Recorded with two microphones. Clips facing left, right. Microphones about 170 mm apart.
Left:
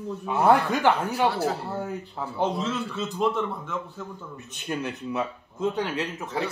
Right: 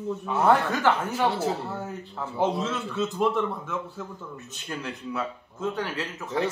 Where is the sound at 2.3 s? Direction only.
Centre (ahead or behind).